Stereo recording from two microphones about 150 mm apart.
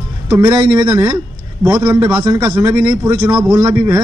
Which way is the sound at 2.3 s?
10° right (ahead or behind).